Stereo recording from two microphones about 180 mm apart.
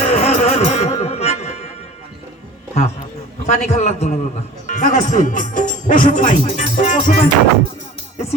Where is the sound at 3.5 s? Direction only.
40° left (ahead or behind).